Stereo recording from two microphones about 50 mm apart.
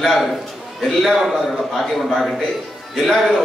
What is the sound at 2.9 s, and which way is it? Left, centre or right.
Speech, centre.